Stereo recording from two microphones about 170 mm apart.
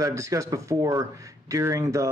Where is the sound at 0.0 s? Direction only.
20° right (ahead or behind).